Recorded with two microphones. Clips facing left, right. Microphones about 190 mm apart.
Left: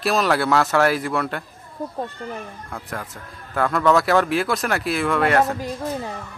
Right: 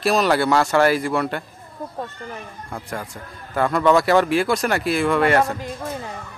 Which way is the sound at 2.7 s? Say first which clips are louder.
Right 3 dB; centre (ahead or behind).